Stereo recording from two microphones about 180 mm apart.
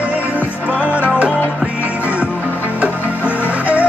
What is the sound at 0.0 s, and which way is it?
Music, 10° right (ahead or behind).